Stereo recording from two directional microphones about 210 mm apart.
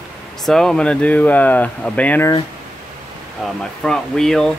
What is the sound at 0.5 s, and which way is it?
Speech, centre (ahead or behind).